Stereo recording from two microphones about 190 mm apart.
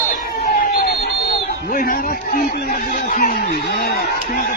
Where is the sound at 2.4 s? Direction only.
45° left (ahead or behind).